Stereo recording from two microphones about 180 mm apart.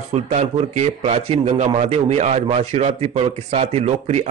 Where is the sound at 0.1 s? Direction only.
35° right (ahead or behind).